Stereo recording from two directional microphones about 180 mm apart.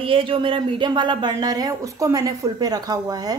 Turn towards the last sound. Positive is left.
turn(degrees=-20)  # may be behind; listen again after turning